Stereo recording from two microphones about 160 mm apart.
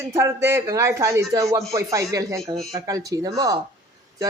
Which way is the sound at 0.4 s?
15° right (ahead or behind).